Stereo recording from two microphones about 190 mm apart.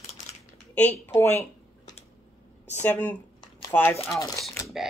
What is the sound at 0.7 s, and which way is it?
Speech, 10° left (ahead or behind).